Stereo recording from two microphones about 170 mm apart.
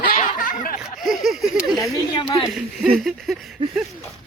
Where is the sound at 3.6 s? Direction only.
30° right (ahead or behind).